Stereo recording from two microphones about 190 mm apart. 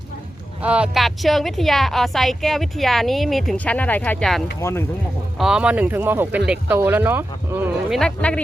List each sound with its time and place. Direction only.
0.6 s a woman's voice: 5° right (ahead or behind)
4.6 s speech: 15° left (ahead or behind)
5.4 s speech: 5° right (ahead or behind)
7.9 s a woman's voice: 5° left (ahead or behind)